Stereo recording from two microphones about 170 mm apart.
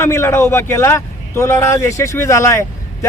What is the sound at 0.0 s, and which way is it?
A man's voice, 15° left (ahead or behind).